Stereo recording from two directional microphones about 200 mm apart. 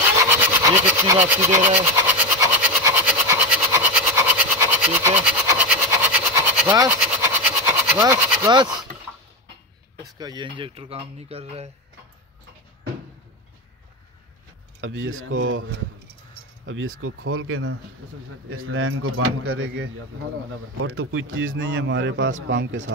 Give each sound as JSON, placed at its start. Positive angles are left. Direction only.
{"t": 0.1, "sound": "a sound", "side_deg": -15}
{"t": 10.0, "sound": "speech", "side_deg": -20}
{"t": 14.8, "sound": "speech", "side_deg": -70}
{"t": 17.0, "sound": "speech", "side_deg": -90}